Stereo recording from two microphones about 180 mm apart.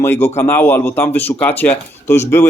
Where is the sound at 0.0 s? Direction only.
15° left (ahead or behind).